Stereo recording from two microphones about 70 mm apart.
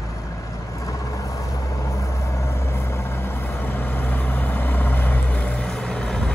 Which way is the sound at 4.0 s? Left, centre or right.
Left.